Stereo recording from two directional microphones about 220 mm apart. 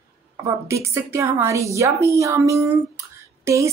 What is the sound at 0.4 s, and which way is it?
A woman's voice, 15° right (ahead or behind).